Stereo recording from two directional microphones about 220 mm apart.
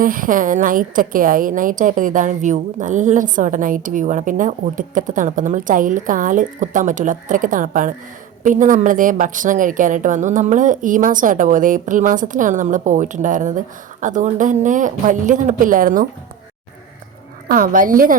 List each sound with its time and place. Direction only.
0.0 s a woman's voice: 40° right (ahead or behind)
17.5 s a woman's voice: 40° right (ahead or behind)